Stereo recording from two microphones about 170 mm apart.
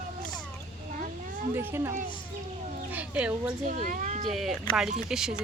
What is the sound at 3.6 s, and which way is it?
Speech, 50° right (ahead or behind).